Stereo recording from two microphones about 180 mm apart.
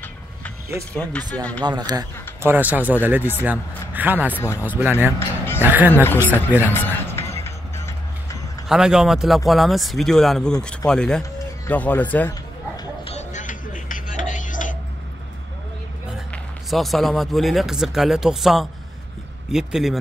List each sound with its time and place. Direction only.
0.9 s speech: 5° left (ahead or behind)
1.6 s speech: 25° right (ahead or behind)
2.5 s speech: 10° right (ahead or behind)
4.4 s speech: 15° left (ahead or behind)
4.6 s speech: 10° right (ahead or behind)
5.4 s music: 10° left (ahead or behind)
5.7 s speech: 10° right (ahead or behind)
6.2 s speech: 10° left (ahead or behind)
6.6 s music: 10° left (ahead or behind)
8.6 s speech: 5° right (ahead or behind)
13.1 s music: 45° left (ahead or behind)
16.7 s speech: centre (ahead or behind)